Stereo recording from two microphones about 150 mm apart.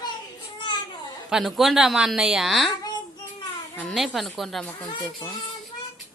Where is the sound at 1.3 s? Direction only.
Centre (ahead or behind).